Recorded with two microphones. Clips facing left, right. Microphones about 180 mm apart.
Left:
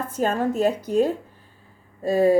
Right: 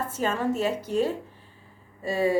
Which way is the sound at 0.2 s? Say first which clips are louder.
Left 5 dB; 45° left (ahead or behind).